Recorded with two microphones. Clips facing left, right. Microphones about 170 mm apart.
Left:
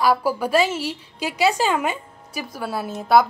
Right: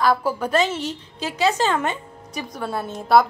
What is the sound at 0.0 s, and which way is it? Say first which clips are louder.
A woman's voice: left 1 dB; 10° left (ahead or behind).